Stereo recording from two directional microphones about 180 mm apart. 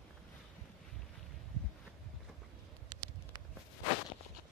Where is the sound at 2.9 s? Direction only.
25° right (ahead or behind).